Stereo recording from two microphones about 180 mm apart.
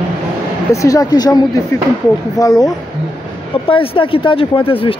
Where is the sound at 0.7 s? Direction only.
20° left (ahead or behind).